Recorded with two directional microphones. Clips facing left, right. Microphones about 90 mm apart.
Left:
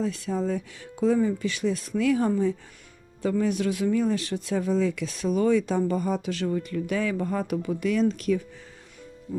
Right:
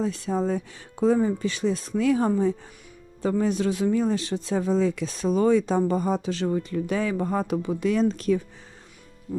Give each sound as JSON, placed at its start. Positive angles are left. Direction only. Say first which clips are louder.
{"t": 0.0, "sound": "speech", "louder": "right 2 dB", "side_deg": -30}